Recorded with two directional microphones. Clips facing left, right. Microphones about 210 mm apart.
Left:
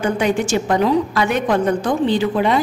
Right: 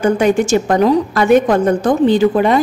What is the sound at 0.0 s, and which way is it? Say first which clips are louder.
A woman's voice: right 5 dB; 45° right (ahead or behind).